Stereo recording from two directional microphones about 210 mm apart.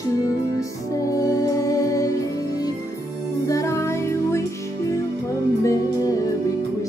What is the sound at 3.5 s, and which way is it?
Music, 15° left (ahead or behind).